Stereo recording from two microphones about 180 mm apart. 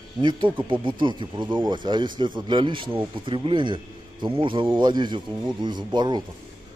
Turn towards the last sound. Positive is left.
turn(degrees=-25)  # may be behind; listen again after turning